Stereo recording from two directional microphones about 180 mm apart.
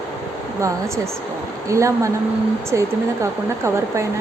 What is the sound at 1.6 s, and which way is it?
Speech, 15° right (ahead or behind).